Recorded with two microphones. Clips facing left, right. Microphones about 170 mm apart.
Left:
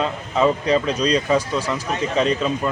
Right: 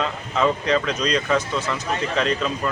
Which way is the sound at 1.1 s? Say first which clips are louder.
Left 2 dB; 10° left (ahead or behind).